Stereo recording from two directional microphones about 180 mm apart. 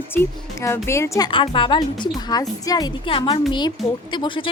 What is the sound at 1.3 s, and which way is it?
Speech, 30° left (ahead or behind).